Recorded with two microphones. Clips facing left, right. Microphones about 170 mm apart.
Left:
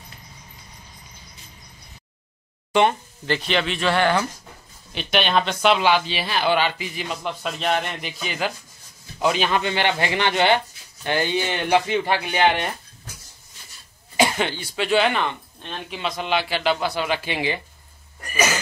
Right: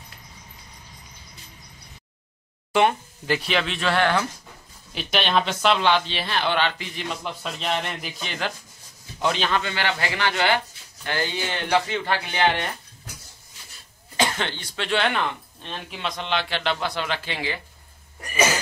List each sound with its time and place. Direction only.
2.7 s a man's voice: 5° right (ahead or behind); by 12.6 s 15° left (ahead or behind)
14.1 s speech: 10° left (ahead or behind)